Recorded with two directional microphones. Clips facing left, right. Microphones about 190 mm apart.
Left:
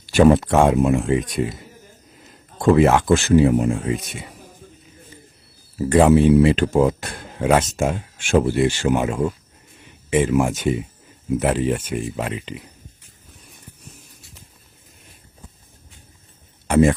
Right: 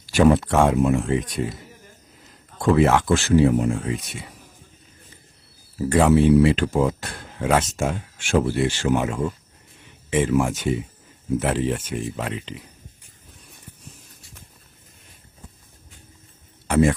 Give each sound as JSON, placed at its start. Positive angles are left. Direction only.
{"t": 0.1, "sound": "speech", "side_deg": 20}
{"t": 2.6, "sound": "speech", "side_deg": 15}
{"t": 5.9, "sound": "speech", "side_deg": 20}
{"t": 16.6, "sound": "a sound", "side_deg": 20}